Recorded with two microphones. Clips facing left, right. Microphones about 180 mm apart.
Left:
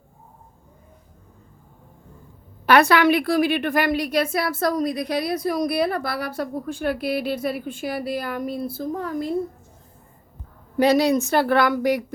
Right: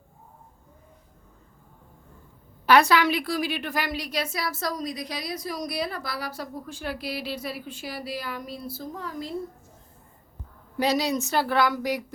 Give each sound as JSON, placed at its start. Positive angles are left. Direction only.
{"t": 2.6, "sound": "a woman's voice", "side_deg": 60}
{"t": 10.8, "sound": "a woman's voice", "side_deg": 55}